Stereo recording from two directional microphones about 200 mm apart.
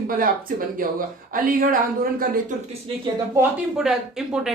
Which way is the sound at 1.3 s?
45° right (ahead or behind).